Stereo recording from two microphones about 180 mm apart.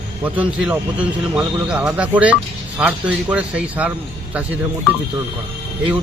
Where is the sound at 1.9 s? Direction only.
10° right (ahead or behind).